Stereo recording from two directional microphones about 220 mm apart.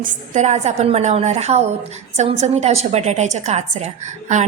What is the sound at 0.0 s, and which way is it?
A woman's voice, 35° right (ahead or behind).